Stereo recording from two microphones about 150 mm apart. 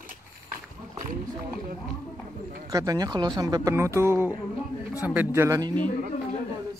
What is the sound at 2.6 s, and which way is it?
A man's voice, 25° right (ahead or behind).